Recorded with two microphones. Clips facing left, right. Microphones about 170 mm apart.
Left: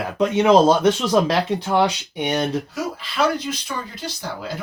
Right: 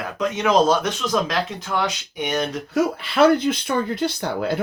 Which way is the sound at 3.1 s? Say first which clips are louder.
Right 6 dB; 60° right (ahead or behind).